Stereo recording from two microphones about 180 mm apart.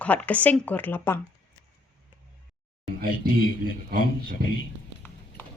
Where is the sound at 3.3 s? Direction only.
90° left.